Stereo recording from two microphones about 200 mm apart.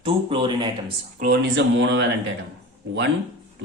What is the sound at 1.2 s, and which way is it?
Speech, 60° right (ahead or behind).